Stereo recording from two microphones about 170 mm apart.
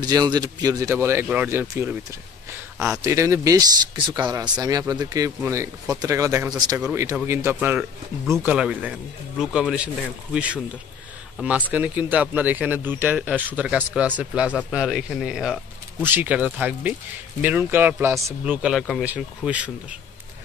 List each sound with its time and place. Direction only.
0.0 s speech: 25° right (ahead or behind); by 20.0 s 5° right (ahead or behind)